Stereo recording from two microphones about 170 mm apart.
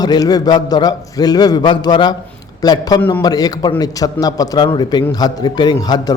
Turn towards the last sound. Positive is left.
turn(degrees=25)  # may be behind; listen again after turning